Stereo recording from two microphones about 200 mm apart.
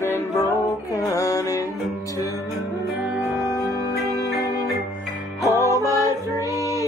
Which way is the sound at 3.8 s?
20° left (ahead or behind).